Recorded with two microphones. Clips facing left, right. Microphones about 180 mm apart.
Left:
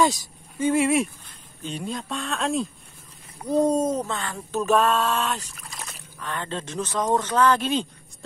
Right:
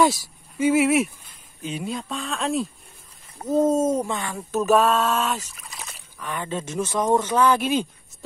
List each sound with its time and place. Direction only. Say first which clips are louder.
0.0 s speech: right 2 dB; 5° right (ahead or behind)